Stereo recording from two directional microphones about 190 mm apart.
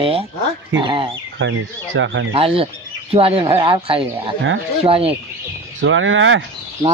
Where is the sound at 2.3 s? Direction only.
30° right (ahead or behind).